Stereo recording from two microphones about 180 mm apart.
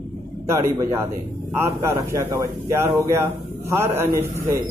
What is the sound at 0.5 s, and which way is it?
Speech, 15° right (ahead or behind).